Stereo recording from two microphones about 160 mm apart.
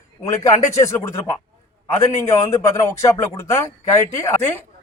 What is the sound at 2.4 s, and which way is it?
Speech, 20° left (ahead or behind).